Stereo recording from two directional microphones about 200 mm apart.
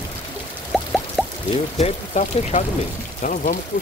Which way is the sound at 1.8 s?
35° left (ahead or behind).